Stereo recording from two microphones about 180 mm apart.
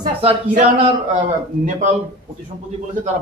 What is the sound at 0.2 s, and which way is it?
Speech, 35° right (ahead or behind).